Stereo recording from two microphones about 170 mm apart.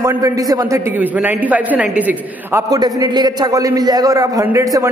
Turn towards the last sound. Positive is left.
turn(degrees=-20)  # may be behind; listen again after turning